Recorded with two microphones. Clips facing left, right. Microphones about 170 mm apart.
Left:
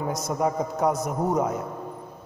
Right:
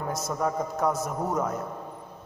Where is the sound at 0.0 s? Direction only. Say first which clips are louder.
Left 3 dB; 15° left (ahead or behind).